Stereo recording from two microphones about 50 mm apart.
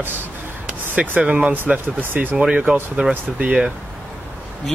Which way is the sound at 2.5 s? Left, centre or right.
Right.